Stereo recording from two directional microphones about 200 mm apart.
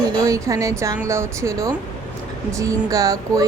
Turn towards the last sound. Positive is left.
turn(degrees=-15)  # may be behind; listen again after turning